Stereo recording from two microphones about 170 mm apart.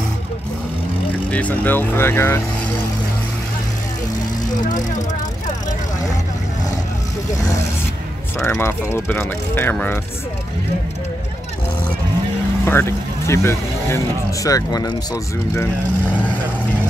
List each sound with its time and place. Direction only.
1.3 s speech: 10° left (ahead or behind)
8.4 s speech: 15° left (ahead or behind)
12.6 s speech: 15° left (ahead or behind)